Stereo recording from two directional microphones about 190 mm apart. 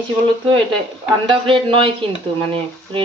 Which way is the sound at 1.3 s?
25° right (ahead or behind).